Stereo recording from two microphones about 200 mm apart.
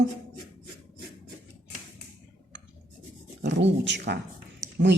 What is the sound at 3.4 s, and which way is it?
Speech, 60° right (ahead or behind).